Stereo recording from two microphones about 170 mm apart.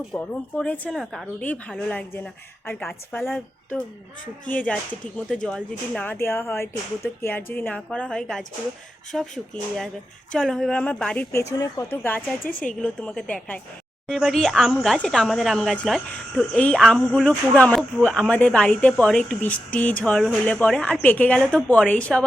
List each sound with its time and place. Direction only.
0.1 s a woman's voice: 5° left (ahead or behind)
12.5 s a woman's voice: 55° left (ahead or behind)
12.8 s a woman's voice: 5° left (ahead or behind)